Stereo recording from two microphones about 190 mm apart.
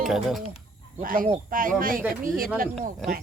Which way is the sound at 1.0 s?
45° right (ahead or behind).